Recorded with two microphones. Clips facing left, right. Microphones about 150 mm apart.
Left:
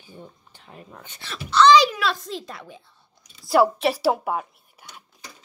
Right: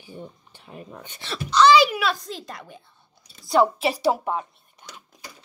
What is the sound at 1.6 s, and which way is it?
A child's voice, 5° right (ahead or behind).